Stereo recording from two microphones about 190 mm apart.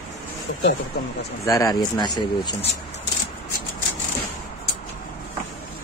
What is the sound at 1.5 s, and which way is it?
Speech, 20° left (ahead or behind).